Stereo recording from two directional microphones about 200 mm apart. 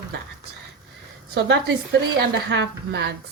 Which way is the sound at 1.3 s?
60° right (ahead or behind).